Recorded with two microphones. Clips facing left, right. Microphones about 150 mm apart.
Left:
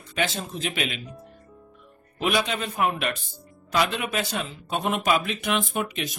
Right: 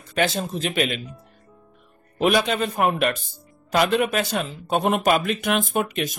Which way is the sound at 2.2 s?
45° right (ahead or behind).